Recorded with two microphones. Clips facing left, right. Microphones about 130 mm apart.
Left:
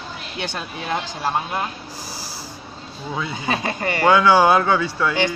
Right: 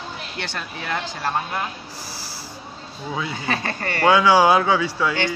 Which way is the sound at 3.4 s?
15° left (ahead or behind).